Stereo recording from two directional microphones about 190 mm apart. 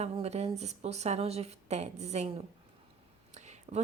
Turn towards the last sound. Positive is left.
turn(degrees=-35)  # may be behind; listen again after turning